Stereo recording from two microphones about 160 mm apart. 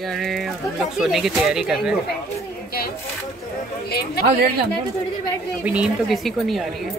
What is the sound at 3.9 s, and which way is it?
Speech, 80° left.